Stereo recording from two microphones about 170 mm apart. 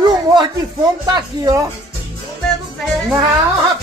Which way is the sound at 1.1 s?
20° right (ahead or behind).